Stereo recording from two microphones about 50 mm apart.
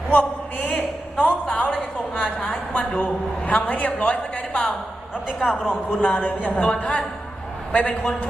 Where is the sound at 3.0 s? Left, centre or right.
Left.